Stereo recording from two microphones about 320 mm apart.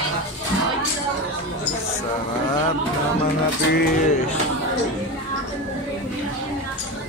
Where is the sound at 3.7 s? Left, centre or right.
Left.